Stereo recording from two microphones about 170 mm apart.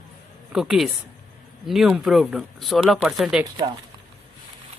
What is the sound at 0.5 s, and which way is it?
Speech, centre (ahead or behind).